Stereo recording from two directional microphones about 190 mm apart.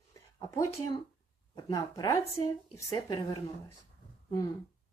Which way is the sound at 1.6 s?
20° left (ahead or behind).